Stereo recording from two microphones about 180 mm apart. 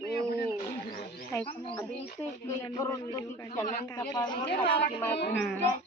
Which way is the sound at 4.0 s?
25° left (ahead or behind).